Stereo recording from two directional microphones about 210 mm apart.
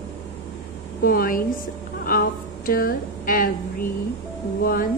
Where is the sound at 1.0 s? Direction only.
45° left (ahead or behind).